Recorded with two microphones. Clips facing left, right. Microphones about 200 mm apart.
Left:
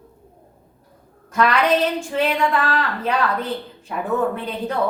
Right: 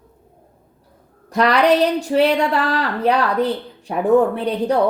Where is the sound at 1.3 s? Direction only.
35° right (ahead or behind).